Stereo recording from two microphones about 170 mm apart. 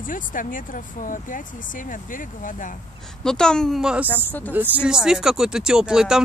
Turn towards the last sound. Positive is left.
turn(degrees=-5)  # may be behind; listen again after turning